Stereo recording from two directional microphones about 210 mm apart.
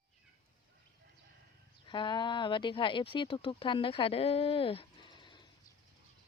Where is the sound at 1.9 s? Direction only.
20° left (ahead or behind).